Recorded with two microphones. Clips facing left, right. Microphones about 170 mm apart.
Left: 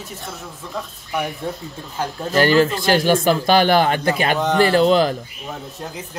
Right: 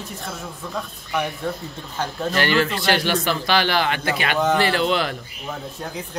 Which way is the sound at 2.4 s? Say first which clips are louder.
Left 6 dB; 40° left (ahead or behind).